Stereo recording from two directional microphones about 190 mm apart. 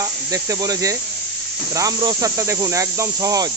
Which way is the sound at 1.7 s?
20° right (ahead or behind).